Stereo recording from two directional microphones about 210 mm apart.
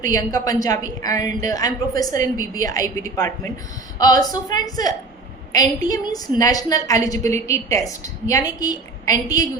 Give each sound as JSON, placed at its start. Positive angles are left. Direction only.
{"t": 0.0, "sound": "a woman's voice", "side_deg": 15}